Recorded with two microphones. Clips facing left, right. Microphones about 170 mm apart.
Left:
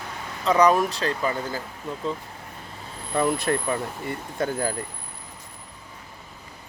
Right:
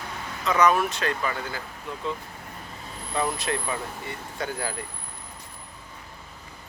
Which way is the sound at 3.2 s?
50° left (ahead or behind).